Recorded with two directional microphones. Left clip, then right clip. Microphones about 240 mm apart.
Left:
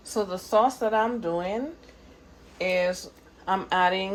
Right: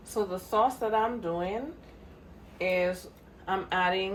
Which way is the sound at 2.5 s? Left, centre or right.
Left.